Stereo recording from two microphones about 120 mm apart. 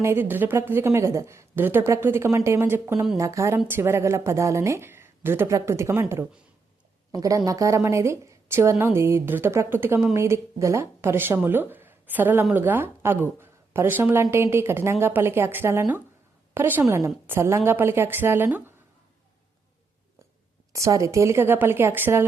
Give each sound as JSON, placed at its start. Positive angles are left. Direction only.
{"t": 0.0, "sound": "speech", "side_deg": -20}
{"t": 20.7, "sound": "speech", "side_deg": -25}